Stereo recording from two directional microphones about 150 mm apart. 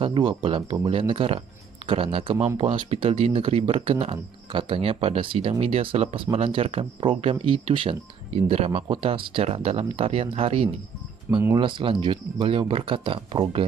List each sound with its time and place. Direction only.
0.0 s speech: 35° right (ahead or behind)